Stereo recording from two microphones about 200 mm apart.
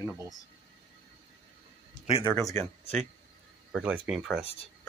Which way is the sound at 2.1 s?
25° left (ahead or behind).